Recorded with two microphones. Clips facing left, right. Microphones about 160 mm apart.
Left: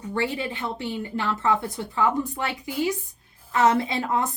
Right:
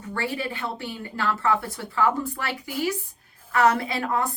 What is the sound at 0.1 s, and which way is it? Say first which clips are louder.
A woman's voice: left 2 dB; 20° left (ahead or behind).